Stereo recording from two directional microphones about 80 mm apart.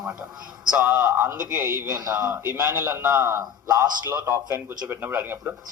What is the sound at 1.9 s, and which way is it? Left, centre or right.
Speech, right.